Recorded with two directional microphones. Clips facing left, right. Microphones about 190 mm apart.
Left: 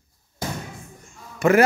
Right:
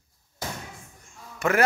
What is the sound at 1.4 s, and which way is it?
Speech, 5° left (ahead or behind).